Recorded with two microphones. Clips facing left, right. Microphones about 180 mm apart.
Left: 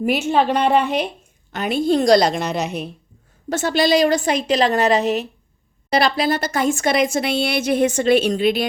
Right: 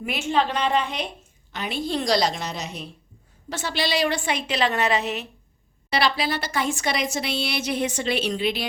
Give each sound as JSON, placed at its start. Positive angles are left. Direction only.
{"t": 0.3, "sound": "a woman's voice", "side_deg": 55}
{"t": 3.5, "sound": "a woman's voice", "side_deg": 45}